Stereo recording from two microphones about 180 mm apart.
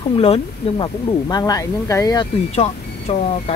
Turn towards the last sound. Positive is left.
turn(degrees=35)  # may be behind; listen again after turning